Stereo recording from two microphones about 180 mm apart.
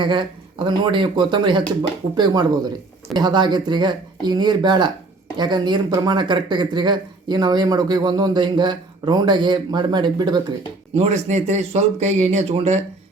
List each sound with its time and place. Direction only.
0.0 s speech: 25° right (ahead or behind)
10.9 s speech: 40° right (ahead or behind)